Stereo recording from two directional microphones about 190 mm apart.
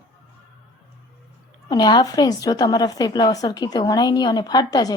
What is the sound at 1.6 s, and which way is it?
A woman's voice, 20° left (ahead or behind).